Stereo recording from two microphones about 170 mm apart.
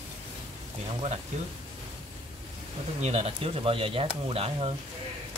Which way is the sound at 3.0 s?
35° right (ahead or behind).